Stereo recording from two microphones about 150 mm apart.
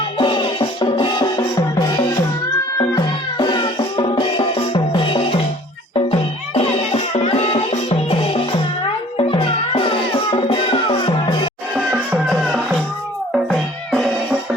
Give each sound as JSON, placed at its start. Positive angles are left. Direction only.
{"t": 0.2, "sound": "music", "side_deg": 35}
{"t": 11.9, "sound": "music", "side_deg": -5}